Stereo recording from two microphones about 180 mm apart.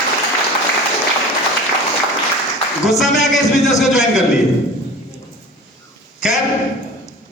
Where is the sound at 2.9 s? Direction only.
Centre (ahead or behind).